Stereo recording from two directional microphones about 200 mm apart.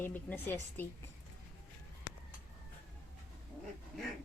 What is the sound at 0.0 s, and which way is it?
A woman's voice, 10° left (ahead or behind).